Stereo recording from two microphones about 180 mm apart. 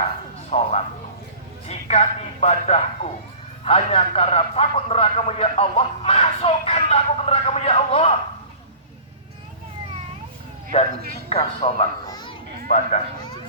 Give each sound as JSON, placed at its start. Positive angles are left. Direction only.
{"t": 0.5, "sound": "a man's voice", "side_deg": 35}
{"t": 10.7, "sound": "a man's voice", "side_deg": 30}
{"t": 12.0, "sound": "baby cry", "side_deg": 20}
{"t": 12.6, "sound": "speech", "side_deg": 40}